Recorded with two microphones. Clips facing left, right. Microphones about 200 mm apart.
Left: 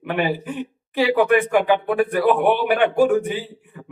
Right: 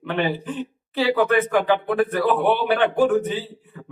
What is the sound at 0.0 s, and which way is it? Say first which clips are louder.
Speech: left 1 dB; 10° left (ahead or behind).